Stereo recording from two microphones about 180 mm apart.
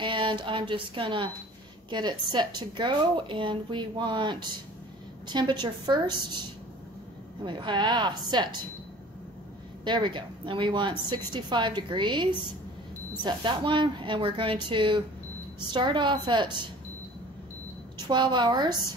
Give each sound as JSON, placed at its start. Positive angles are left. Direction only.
{"t": 0.0, "sound": "speech", "side_deg": -25}
{"t": 7.4, "sound": "speech", "side_deg": -25}
{"t": 9.8, "sound": "speech", "side_deg": -25}
{"t": 18.0, "sound": "speech", "side_deg": -25}